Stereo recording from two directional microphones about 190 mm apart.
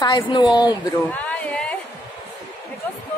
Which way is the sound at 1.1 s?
5° left (ahead or behind).